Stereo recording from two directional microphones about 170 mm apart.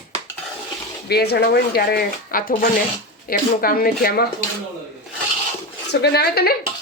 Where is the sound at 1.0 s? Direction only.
70° left (ahead or behind).